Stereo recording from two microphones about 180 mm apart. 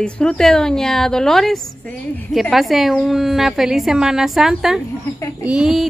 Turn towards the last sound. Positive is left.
turn(degrees=-5)  # may be behind; listen again after turning